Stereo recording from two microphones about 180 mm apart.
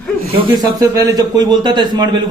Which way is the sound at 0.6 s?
20° right (ahead or behind).